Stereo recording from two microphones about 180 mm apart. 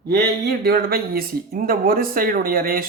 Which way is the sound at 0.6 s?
55° right (ahead or behind).